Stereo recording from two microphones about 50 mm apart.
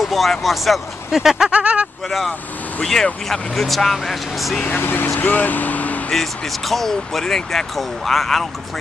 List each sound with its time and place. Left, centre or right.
0.0 s speech: centre
1.5 s speech: right
2.0 s speech: centre
4.6 s speech: left
5.2 s speech: left
6.1 s speech: centre